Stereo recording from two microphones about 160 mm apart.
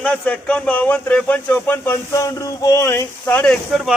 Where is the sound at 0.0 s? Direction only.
10° left (ahead or behind).